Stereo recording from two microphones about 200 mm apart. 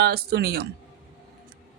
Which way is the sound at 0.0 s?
55° right (ahead or behind).